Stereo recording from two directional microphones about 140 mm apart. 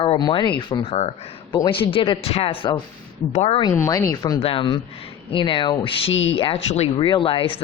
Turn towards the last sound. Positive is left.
turn(degrees=40)  # may be behind; listen again after turning